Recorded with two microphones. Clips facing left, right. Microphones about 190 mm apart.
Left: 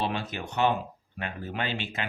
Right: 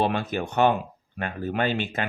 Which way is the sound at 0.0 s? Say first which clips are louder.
Right 6 dB; 50° right (ahead or behind).